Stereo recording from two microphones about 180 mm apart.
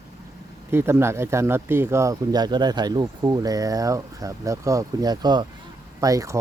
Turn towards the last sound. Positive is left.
turn(degrees=-20)  # may be behind; listen again after turning